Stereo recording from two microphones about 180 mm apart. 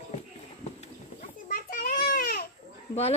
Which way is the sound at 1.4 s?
55° left (ahead or behind).